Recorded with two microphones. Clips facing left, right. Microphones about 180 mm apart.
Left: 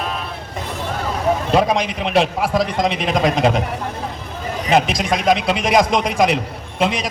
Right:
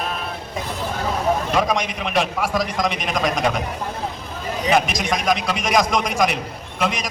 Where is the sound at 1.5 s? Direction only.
30° left (ahead or behind).